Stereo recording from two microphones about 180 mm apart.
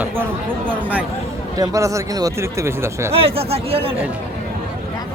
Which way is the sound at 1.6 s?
20° right (ahead or behind).